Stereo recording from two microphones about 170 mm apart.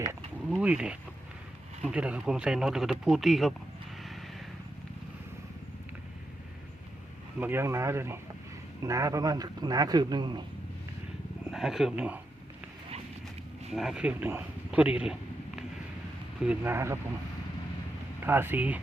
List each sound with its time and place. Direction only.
0.5 s speech: 5° right (ahead or behind)
7.3 s a man's voice: 10° right (ahead or behind)
11.5 s speech: centre (ahead or behind)
13.7 s speech: 5° right (ahead or behind)
18.2 s speech: 15° right (ahead or behind)